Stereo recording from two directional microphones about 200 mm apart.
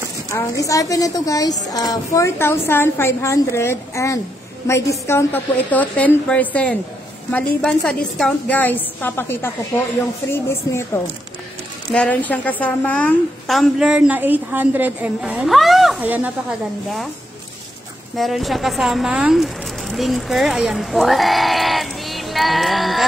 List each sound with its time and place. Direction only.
0.6 s a woman's voice: 15° left (ahead or behind); by 16.3 s 10° right (ahead or behind)
18.1 s speech: centre (ahead or behind)